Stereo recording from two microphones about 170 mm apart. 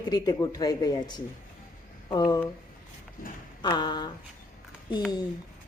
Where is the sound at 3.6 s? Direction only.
25° left (ahead or behind).